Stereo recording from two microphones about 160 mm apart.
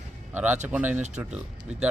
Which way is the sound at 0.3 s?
10° right (ahead or behind).